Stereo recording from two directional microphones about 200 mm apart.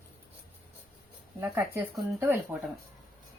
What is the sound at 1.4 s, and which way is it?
Speech, 10° right (ahead or behind).